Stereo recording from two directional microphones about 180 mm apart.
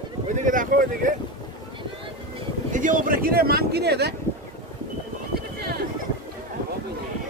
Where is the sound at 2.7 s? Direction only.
45° right (ahead or behind); by 4.1 s 65° right (ahead or behind).